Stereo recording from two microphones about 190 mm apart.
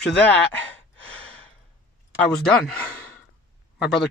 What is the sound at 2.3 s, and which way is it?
Speech, 5° left (ahead or behind).